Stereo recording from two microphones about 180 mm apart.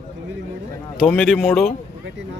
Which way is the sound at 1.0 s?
5° left (ahead or behind).